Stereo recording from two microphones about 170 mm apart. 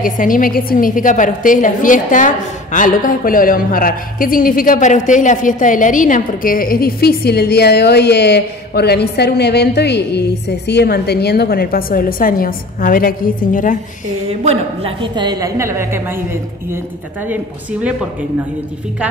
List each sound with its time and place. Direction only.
0.0 s a woman's voice: 50° left (ahead or behind)
14.4 s a woman's voice: 35° right (ahead or behind); by 16.0 s 15° right (ahead or behind)